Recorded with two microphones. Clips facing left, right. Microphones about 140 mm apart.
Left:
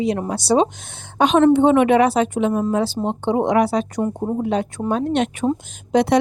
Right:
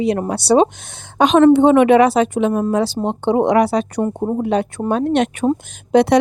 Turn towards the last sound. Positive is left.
turn(degrees=-70)  # may be behind; listen again after turning